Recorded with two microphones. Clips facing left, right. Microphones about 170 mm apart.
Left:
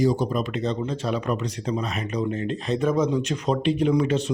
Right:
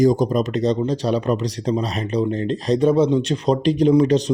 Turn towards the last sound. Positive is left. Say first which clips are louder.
# right 6 dB
turn(degrees=-35)  # may be behind; listen again after turning